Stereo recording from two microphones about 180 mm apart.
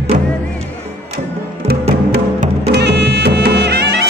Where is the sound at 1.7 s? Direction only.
60° right (ahead or behind).